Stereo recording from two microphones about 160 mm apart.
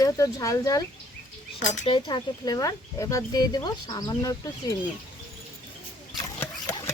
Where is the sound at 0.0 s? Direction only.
20° left (ahead or behind).